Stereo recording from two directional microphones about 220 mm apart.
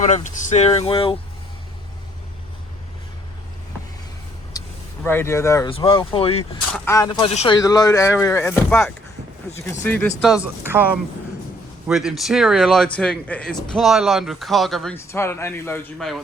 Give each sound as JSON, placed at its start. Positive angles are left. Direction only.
{"t": 0.0, "sound": "speech", "side_deg": 30}
{"t": 4.5, "sound": "vehicle", "side_deg": 15}
{"t": 5.0, "sound": "speech", "side_deg": 10}
{"t": 6.7, "sound": "speech", "side_deg": 15}
{"t": 10.3, "sound": "speech", "side_deg": -5}
{"t": 11.9, "sound": "speech", "side_deg": 0}
{"t": 14.9, "sound": "speech", "side_deg": 10}